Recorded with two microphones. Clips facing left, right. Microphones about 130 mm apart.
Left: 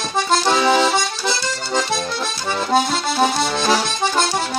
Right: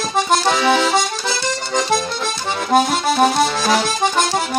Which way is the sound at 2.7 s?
15° right (ahead or behind).